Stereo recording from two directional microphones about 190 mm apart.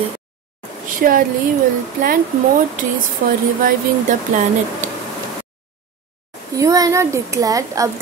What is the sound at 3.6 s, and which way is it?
Speech, 40° right (ahead or behind).